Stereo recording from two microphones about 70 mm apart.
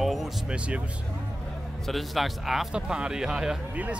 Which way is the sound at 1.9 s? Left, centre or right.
Centre.